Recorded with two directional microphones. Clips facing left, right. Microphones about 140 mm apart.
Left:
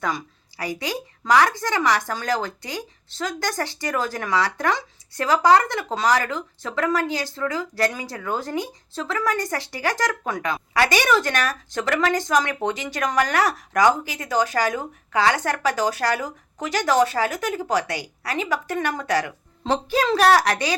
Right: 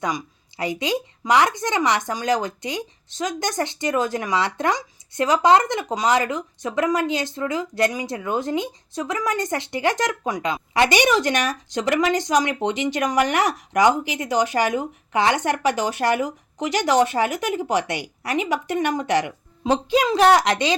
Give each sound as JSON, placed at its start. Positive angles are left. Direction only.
{"t": 0.0, "sound": "a woman's voice", "side_deg": -15}